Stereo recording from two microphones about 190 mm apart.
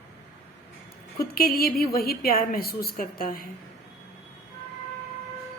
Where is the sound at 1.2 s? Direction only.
50° left (ahead or behind).